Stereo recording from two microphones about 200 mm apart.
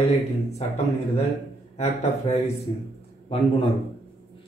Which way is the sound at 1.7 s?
35° left (ahead or behind).